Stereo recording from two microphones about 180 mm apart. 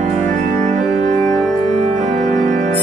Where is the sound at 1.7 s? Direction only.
40° right (ahead or behind).